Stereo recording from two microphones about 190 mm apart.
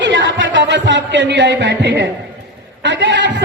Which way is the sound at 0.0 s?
75° right (ahead or behind).